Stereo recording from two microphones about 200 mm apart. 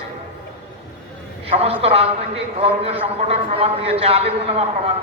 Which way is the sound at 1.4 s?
30° right (ahead or behind).